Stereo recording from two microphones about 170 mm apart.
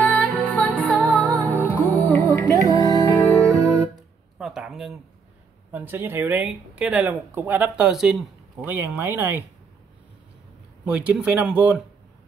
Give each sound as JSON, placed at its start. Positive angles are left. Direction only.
{"t": 0.0, "sound": "music", "side_deg": 10}
{"t": 1.1, "sound": "music", "side_deg": -15}
{"t": 1.5, "sound": "music", "side_deg": 15}
{"t": 3.4, "sound": "music", "side_deg": -20}
{"t": 4.4, "sound": "speech", "side_deg": 0}
{"t": 10.9, "sound": "speech", "side_deg": -10}